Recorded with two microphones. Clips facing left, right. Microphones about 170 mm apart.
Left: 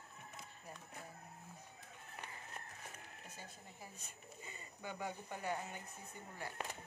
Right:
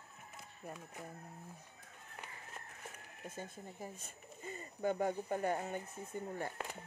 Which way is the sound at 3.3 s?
50° right (ahead or behind).